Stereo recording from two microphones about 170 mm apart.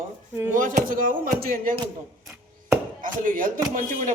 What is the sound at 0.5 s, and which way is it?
Speech, 50° right (ahead or behind).